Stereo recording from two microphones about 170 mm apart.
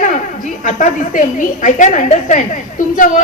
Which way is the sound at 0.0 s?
50° left (ahead or behind).